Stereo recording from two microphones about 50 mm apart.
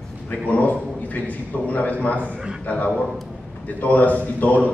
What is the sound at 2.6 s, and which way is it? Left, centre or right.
A man's voice, left.